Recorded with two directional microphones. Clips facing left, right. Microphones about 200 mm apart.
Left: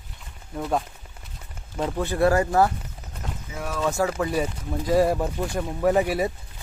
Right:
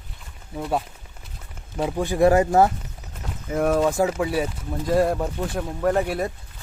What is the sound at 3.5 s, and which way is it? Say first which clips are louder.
Speech: right 10 dB; 50° right (ahead or behind).